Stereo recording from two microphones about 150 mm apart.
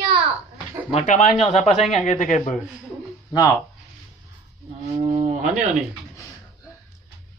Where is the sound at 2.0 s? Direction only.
55° left (ahead or behind).